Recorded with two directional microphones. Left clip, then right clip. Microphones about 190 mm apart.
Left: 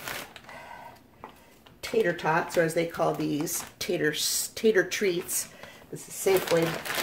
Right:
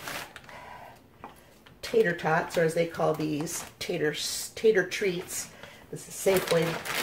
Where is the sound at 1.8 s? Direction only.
40° left (ahead or behind).